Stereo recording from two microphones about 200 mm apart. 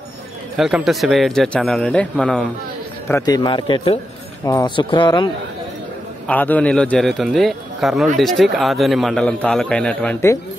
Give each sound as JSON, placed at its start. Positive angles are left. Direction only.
{"t": 0.6, "sound": "a man's voice", "side_deg": 0}
{"t": 3.1, "sound": "a man's voice", "side_deg": 20}
{"t": 6.2, "sound": "a man's voice", "side_deg": 10}